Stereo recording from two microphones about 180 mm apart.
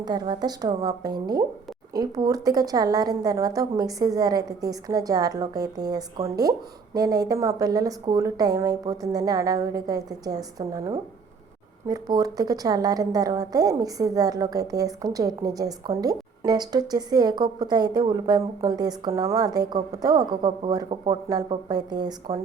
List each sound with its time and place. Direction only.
0.0 s speech: 25° right (ahead or behind)